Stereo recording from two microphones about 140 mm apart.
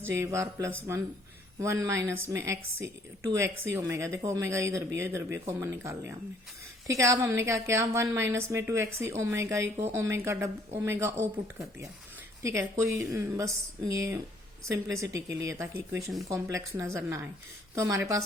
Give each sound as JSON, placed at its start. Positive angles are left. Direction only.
{"t": 0.0, "sound": "a woman's voice", "side_deg": -20}
{"t": 12.4, "sound": "a woman's voice", "side_deg": -20}